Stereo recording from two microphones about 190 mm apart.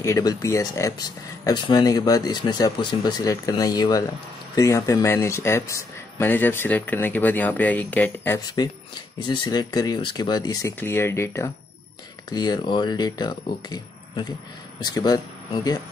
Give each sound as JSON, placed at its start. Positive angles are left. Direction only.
{"t": 0.0, "sound": "speech", "side_deg": 15}
{"t": 9.3, "sound": "speech", "side_deg": 25}